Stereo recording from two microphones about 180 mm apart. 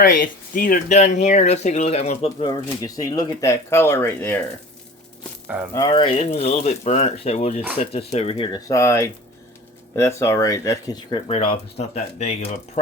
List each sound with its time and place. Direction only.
0.0 s speech: 50° left (ahead or behind); by 4.4 s 10° left (ahead or behind)
5.7 s speech: 25° left (ahead or behind)
8.5 s speech: 20° left (ahead or behind)
11.3 s speech: 35° left (ahead or behind)